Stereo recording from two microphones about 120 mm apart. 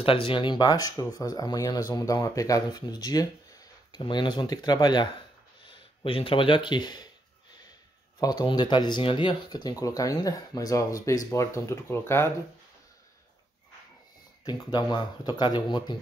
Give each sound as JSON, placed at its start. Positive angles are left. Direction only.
{"t": 0.0, "sound": "speech", "side_deg": 50}
{"t": 5.7, "sound": "speech", "side_deg": 45}
{"t": 8.2, "sound": "speech", "side_deg": 30}
{"t": 14.4, "sound": "speech", "side_deg": 40}